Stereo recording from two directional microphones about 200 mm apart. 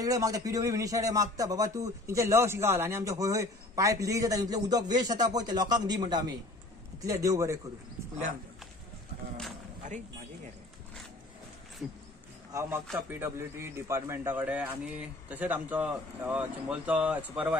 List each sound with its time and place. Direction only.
0.0 s speech: 15° right (ahead or behind)
9.8 s a sound: 40° right (ahead or behind)
12.5 s speech: 15° right (ahead or behind)